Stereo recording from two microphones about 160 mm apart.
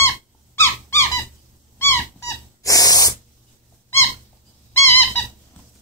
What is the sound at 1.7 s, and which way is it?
Dog, 15° left (ahead or behind).